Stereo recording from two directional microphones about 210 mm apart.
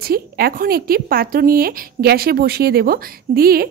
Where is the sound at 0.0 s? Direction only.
45° right (ahead or behind).